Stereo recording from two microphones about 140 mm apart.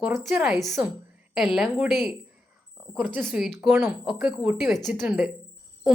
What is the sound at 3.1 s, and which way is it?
Speech, 15° right (ahead or behind).